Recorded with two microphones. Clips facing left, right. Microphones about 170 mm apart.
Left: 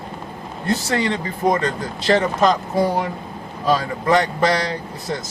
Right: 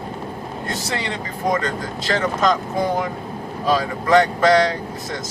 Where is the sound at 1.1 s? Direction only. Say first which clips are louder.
Even; 30° left (ahead or behind).